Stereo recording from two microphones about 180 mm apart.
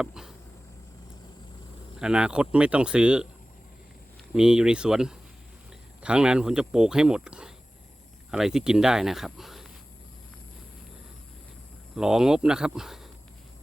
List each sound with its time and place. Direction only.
0.0 s a sound: 5° right (ahead or behind)
2.0 s speech: 5° right (ahead or behind)
4.4 s speech: 5° right (ahead or behind)
11.9 s speech: 5° right (ahead or behind)